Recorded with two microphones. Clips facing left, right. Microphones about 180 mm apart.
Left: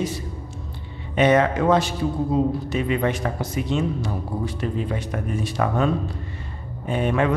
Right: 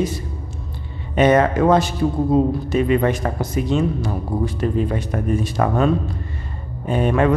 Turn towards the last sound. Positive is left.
turn(degrees=-45)  # may be behind; listen again after turning